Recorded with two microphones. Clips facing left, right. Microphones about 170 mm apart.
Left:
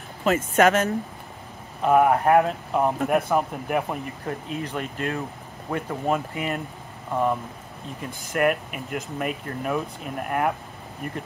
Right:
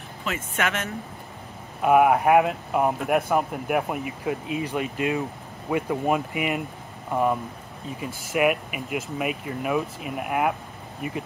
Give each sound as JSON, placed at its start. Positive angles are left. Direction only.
{"t": 0.2, "sound": "speech", "side_deg": 40}
{"t": 1.8, "sound": "a man's voice", "side_deg": -10}